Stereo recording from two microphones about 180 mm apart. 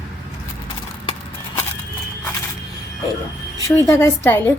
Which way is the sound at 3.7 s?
15° left (ahead or behind).